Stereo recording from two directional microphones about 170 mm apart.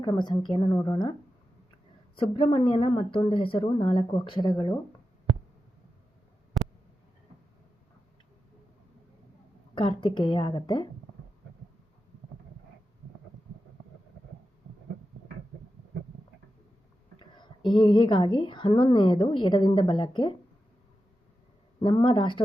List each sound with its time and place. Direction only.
0.0 s a woman's voice: 25° left (ahead or behind)
2.1 s a woman's voice: 30° left (ahead or behind)
9.7 s a woman's voice: 30° left (ahead or behind)
17.2 s a woman's voice: 25° left (ahead or behind)
21.8 s a woman's voice: 30° left (ahead or behind)